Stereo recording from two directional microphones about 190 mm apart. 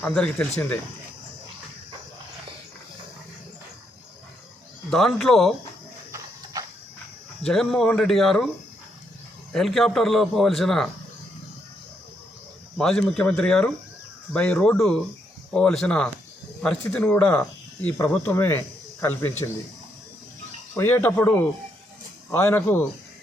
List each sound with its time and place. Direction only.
0.0 s a man's voice: 5° left (ahead or behind)
4.9 s a man's voice: centre (ahead or behind)
6.1 s horse: 20° right (ahead or behind)
7.4 s a man's voice: centre (ahead or behind)
9.5 s a man's voice: centre (ahead or behind)
12.7 s a man's voice: centre (ahead or behind)
20.7 s speech: 10° left (ahead or behind)